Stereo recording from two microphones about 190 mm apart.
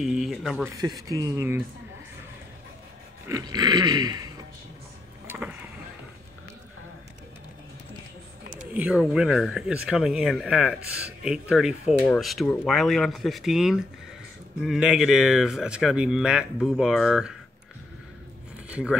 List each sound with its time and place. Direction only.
0.0 s speech: centre (ahead or behind)
0.7 s speech: 20° right (ahead or behind)
3.3 s dog: 20° right (ahead or behind)
5.2 s vehicle: 10° right (ahead or behind)
8.7 s speech: 5° right (ahead or behind)
18.7 s speech: 5° right (ahead or behind)